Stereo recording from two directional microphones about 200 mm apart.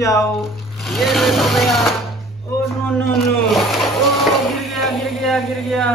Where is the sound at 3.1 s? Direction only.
Centre (ahead or behind).